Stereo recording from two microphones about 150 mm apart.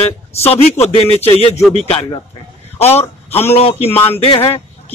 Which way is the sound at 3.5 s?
45° left (ahead or behind).